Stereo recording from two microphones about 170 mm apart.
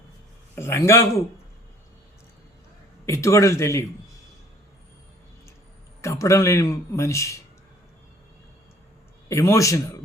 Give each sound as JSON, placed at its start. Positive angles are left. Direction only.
{"t": 0.5, "sound": "a man's voice", "side_deg": 15}
{"t": 3.1, "sound": "a man's voice", "side_deg": 15}
{"t": 6.0, "sound": "a man's voice", "side_deg": 15}
{"t": 9.3, "sound": "a man's voice", "side_deg": 20}